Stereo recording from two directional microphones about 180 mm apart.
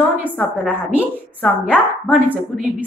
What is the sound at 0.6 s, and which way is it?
A woman's voice, 10° right (ahead or behind).